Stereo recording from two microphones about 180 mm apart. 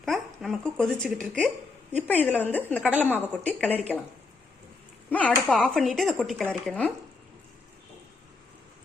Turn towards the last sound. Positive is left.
turn(degrees=5)  # may be behind; listen again after turning